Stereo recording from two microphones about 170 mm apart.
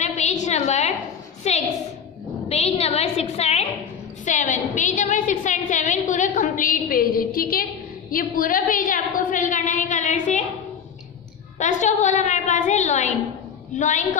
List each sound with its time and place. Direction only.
0.0 s a sound: 45° left (ahead or behind)
1.5 s a woman's voice: 40° left (ahead or behind)
11.5 s a woman's voice: 45° left (ahead or behind)